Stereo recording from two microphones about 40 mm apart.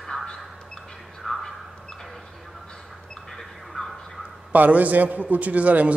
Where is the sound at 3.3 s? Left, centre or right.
Centre.